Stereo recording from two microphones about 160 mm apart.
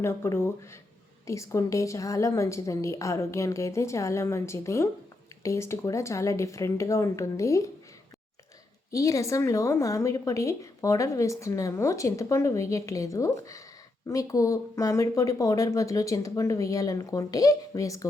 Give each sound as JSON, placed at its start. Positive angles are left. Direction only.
{"t": 0.0, "sound": "a woman's voice", "side_deg": 15}
{"t": 8.9, "sound": "a woman's voice", "side_deg": 20}